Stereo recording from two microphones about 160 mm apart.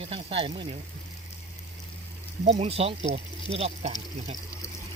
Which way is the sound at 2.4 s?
45° right (ahead or behind).